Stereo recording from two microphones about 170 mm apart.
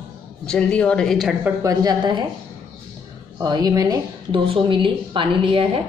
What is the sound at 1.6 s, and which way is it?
Speech, 25° right (ahead or behind).